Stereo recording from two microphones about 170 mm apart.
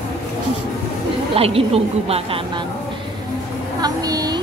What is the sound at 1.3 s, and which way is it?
A woman's voice, 35° right (ahead or behind).